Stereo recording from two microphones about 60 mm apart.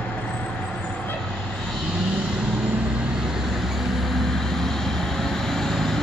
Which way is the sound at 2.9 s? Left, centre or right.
Centre.